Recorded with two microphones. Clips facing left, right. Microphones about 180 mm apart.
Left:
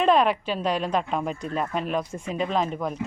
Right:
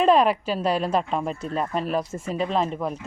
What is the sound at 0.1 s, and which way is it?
Speech, 35° right (ahead or behind).